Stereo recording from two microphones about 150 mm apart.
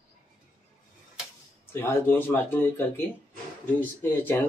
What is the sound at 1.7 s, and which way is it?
Speech, 15° left (ahead or behind).